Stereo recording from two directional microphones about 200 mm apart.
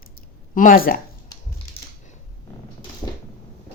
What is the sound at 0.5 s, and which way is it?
Speech, 45° left (ahead or behind).